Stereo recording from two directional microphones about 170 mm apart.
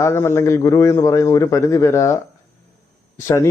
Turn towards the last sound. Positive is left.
turn(degrees=15)  # may be behind; listen again after turning